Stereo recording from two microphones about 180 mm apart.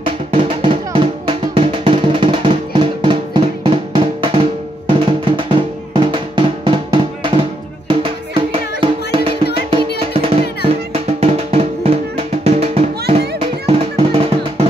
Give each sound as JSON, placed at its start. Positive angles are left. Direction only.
{"t": 0.3, "sound": "music", "side_deg": -30}